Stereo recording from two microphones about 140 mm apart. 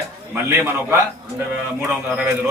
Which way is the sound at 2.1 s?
10° right (ahead or behind).